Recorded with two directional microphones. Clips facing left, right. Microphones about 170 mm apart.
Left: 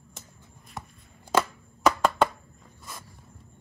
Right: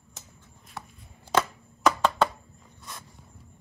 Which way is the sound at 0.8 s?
20° left (ahead or behind).